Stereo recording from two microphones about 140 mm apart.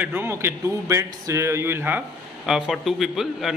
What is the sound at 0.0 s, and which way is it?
A man's voice, 15° right (ahead or behind).